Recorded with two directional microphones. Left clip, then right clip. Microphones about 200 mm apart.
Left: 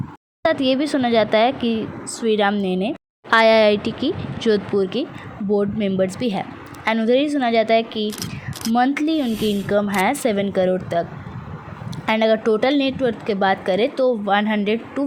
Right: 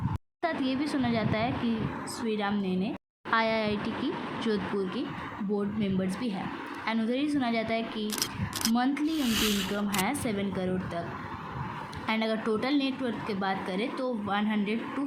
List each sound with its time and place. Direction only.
0.4 s a woman's voice: 40° left (ahead or behind)
8.0 s a sound: centre (ahead or behind)
8.7 s a woman's voice: 40° left (ahead or behind)
12.0 s a woman's voice: 40° left (ahead or behind)